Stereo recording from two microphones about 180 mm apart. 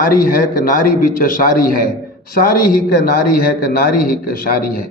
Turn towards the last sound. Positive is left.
turn(degrees=55)  # may be behind; listen again after turning